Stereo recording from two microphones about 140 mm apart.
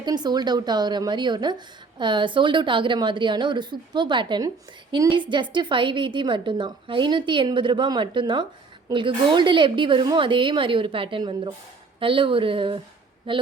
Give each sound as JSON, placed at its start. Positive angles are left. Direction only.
{"t": 0.0, "sound": "a woman's voice", "side_deg": -30}